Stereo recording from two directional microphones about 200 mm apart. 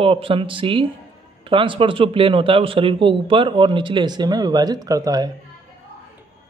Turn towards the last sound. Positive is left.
turn(degrees=-20)  # may be behind; listen again after turning